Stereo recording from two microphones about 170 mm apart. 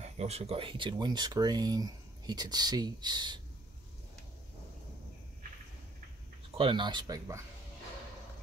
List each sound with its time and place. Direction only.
0.0 s speech: 40° right (ahead or behind)
6.5 s speech: 30° right (ahead or behind)